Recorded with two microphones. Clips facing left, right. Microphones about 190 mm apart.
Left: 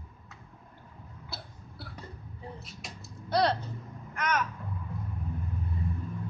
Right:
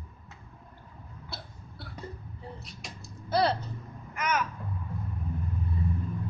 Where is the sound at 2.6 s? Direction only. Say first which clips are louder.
Even; centre (ahead or behind).